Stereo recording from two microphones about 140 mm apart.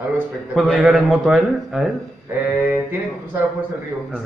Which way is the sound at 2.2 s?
15° right (ahead or behind).